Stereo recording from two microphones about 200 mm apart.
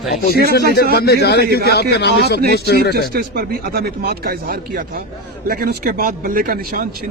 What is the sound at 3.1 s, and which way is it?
A man's voice, 50° right (ahead or behind).